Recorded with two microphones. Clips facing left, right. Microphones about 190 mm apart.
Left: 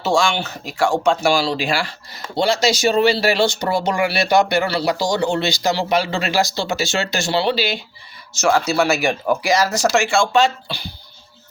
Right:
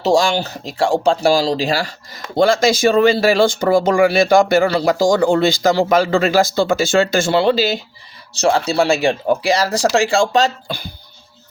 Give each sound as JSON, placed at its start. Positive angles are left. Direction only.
{"t": 0.0, "sound": "speech", "side_deg": -40}
{"t": 2.3, "sound": "speech", "side_deg": -50}
{"t": 8.4, "sound": "speech", "side_deg": -30}